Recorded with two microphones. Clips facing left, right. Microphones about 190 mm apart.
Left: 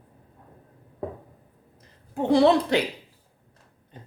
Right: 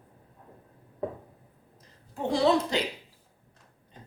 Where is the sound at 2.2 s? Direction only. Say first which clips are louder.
Left 6 dB; 60° left (ahead or behind).